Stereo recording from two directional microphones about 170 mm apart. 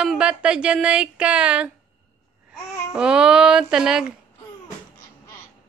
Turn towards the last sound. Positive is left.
turn(degrees=-5)  # may be behind; listen again after turning